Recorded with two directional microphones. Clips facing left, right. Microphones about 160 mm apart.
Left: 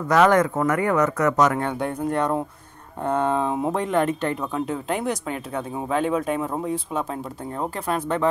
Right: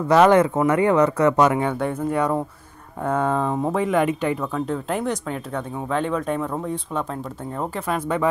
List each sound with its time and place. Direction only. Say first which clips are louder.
0.1 s speech: right 3 dB; 15° right (ahead or behind)
0.9 s speech: right 3 dB; 30° right (ahead or behind)
1.6 s speech: right 2 dB; 5° right (ahead or behind)
3.8 s speech: right 3 dB; 10° right (ahead or behind)
4.4 s speech: right 1 dB; 5° left (ahead or behind)